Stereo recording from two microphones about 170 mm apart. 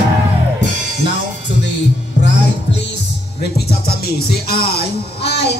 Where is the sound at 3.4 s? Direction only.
70° left (ahead or behind).